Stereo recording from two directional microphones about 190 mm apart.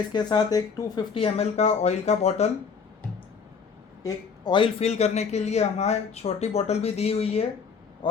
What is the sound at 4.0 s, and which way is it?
A man's voice, 20° left (ahead or behind).